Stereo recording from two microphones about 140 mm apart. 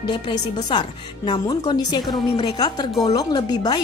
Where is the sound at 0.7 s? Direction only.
35° left (ahead or behind).